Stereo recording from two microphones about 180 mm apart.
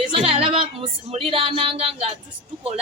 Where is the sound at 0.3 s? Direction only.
30° right (ahead or behind).